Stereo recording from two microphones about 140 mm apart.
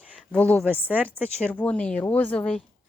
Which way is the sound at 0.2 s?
10° left (ahead or behind).